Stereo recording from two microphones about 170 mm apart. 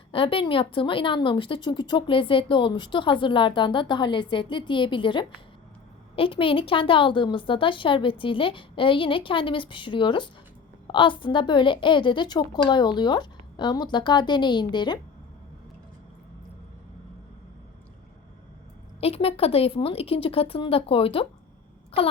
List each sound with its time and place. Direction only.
0.1 s a woman's voice: 30° left (ahead or behind)
18.9 s a woman's voice: 35° left (ahead or behind)